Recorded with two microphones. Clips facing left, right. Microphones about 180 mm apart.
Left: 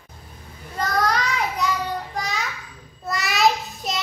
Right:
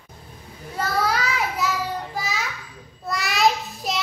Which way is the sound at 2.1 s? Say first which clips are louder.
Left 1 dB; centre (ahead or behind).